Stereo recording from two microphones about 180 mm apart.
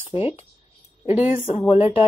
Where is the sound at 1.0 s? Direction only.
10° right (ahead or behind).